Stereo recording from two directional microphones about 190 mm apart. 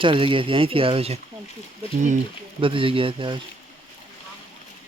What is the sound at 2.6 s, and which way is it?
Speech, 25° right (ahead or behind).